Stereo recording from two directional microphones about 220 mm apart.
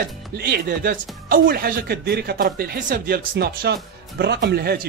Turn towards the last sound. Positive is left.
turn(degrees=-45)  # may be behind; listen again after turning